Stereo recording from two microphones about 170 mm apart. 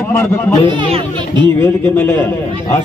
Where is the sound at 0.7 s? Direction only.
30° right (ahead or behind).